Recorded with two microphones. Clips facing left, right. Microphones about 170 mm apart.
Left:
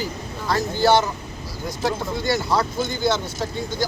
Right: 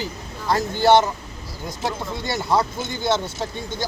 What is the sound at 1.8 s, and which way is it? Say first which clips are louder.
Speech: left 4 dB; 25° right (ahead or behind).